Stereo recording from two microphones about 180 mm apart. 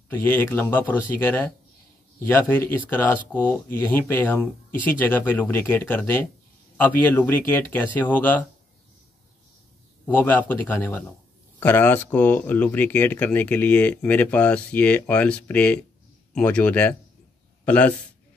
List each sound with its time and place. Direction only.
0.1 s speech: 10° left (ahead or behind)
10.0 s speech: 10° left (ahead or behind)